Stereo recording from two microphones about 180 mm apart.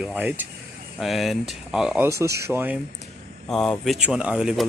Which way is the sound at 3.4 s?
5° left (ahead or behind).